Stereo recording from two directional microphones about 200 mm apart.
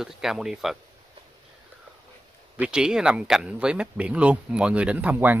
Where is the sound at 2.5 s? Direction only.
5° right (ahead or behind).